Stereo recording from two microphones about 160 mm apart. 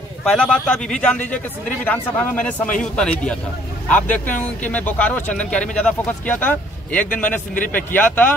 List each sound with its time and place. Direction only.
0.2 s a man's voice: 5° left (ahead or behind)